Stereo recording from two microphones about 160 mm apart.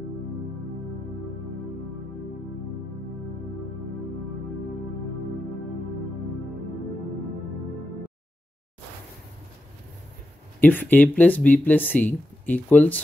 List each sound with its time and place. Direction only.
10.6 s speech: 10° left (ahead or behind)